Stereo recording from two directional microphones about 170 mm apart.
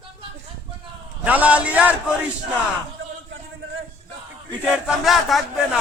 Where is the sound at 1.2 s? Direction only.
10° right (ahead or behind).